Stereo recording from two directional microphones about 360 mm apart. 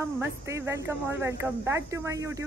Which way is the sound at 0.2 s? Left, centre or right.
Centre.